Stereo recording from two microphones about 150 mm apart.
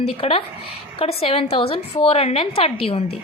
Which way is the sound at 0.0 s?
40° left (ahead or behind).